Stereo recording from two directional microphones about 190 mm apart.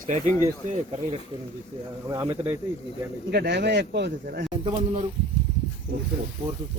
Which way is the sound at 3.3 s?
60° right (ahead or behind).